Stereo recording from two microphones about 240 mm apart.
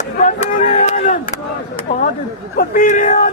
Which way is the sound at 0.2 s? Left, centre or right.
Left.